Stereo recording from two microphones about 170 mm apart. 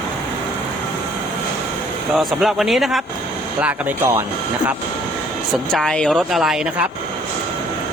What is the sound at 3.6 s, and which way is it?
Speech, 10° right (ahead or behind).